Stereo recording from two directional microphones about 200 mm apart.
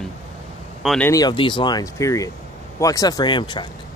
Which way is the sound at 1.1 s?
20° left (ahead or behind).